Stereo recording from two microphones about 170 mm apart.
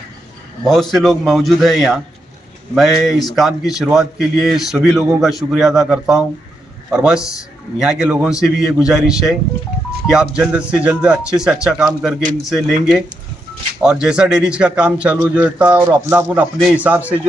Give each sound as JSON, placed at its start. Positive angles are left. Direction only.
{"t": 0.7, "sound": "a man's voice", "side_deg": 0}